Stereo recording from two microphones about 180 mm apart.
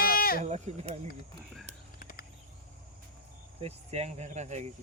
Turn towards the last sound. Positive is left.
turn(degrees=-40)  # may be behind; listen again after turning